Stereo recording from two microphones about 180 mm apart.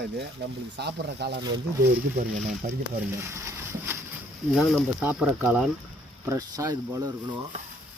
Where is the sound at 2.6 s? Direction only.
55° right (ahead or behind).